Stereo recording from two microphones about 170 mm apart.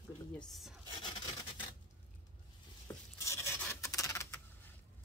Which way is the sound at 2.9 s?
15° left (ahead or behind).